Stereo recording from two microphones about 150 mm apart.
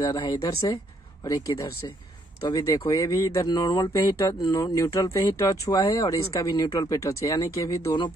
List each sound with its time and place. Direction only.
0.0 s speech: 25° left (ahead or behind)